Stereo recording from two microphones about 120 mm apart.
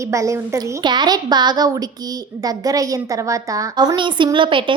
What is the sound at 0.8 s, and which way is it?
A woman's voice, 35° right (ahead or behind).